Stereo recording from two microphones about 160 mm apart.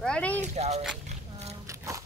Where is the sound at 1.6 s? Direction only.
20° right (ahead or behind).